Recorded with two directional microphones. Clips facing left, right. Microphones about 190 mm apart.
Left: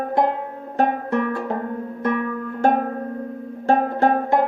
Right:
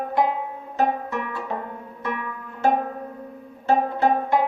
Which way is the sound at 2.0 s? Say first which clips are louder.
Left 7 dB; 50° left (ahead or behind).